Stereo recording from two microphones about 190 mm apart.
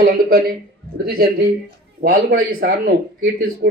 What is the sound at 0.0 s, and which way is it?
Speech, 55° right (ahead or behind).